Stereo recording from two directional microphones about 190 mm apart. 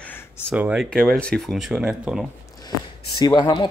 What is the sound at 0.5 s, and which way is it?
Speech, 5° right (ahead or behind).